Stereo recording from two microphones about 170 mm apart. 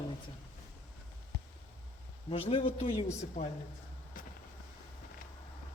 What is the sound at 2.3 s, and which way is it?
Speech, 35° left (ahead or behind).